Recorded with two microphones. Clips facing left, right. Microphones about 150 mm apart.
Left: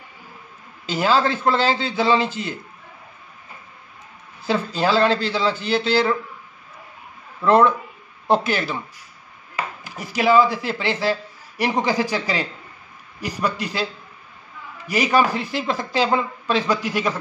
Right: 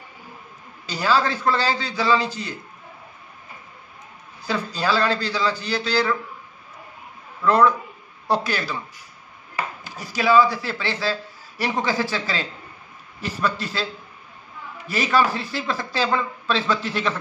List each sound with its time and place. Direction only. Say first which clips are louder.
0.8 s a man's voice: left 2 dB; 20° left (ahead or behind)
4.5 s a man's voice: left 3 dB; 25° left (ahead or behind)
7.4 s a man's voice: left 2 dB; 25° left (ahead or behind)
9.8 s a man's voice: left 2 dB; 20° left (ahead or behind)
14.9 s speech: left 2 dB; 15° left (ahead or behind)